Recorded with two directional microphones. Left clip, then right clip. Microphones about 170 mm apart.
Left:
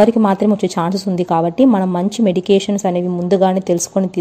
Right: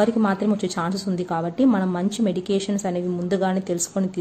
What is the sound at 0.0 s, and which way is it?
A woman's voice, 35° left (ahead or behind).